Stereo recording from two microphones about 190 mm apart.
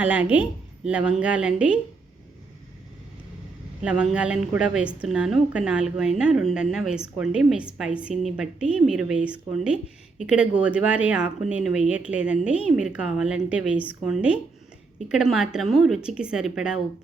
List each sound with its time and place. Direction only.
0.0 s a woman's voice: 10° right (ahead or behind)
3.8 s a woman's voice: 5° right (ahead or behind)